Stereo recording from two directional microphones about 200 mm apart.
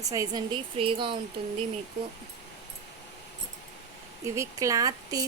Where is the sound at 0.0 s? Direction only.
15° right (ahead or behind).